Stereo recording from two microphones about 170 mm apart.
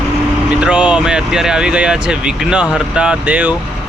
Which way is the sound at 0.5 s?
5° right (ahead or behind).